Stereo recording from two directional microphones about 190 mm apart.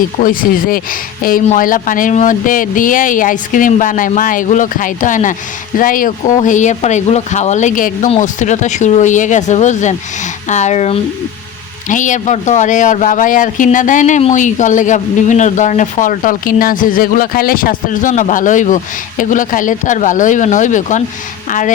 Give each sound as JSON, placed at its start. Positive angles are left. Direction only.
{"t": 0.2, "sound": "a man's voice", "side_deg": 45}